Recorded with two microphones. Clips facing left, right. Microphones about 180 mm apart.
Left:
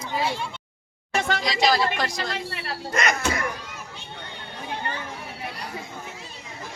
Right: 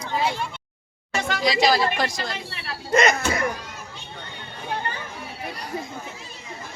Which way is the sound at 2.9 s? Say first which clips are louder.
Right 5 dB; 25° right (ahead or behind).